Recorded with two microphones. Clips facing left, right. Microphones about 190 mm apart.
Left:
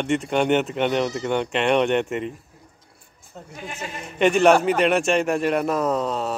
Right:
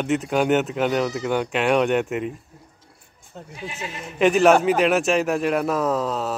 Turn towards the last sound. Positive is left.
turn(degrees=0)  # may be behind; listen again after turning